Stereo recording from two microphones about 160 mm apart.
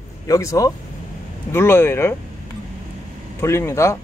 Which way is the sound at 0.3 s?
20° left (ahead or behind).